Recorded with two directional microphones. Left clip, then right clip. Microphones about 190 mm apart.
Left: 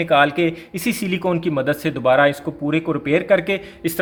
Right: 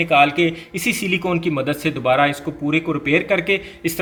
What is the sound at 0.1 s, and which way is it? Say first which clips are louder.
A man's voice: even; 30° left (ahead or behind).